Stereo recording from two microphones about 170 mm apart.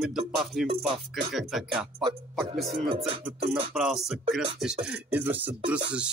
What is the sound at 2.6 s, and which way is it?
Speech, 30° right (ahead or behind).